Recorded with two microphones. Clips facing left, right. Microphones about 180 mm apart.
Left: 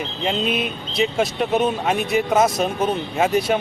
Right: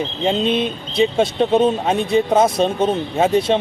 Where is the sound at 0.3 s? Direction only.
25° right (ahead or behind).